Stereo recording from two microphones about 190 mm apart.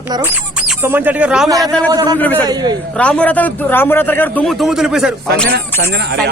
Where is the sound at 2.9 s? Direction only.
5° left (ahead or behind).